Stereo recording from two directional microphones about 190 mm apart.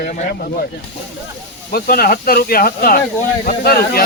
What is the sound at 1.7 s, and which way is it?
Speech, 55° left (ahead or behind).